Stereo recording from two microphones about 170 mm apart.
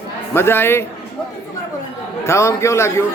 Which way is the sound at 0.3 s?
15° left (ahead or behind).